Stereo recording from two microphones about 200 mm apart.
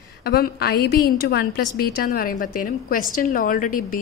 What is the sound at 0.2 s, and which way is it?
A woman's voice, 50° left (ahead or behind).